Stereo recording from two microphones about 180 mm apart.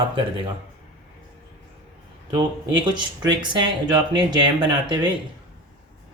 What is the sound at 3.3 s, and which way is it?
Speech, 25° right (ahead or behind).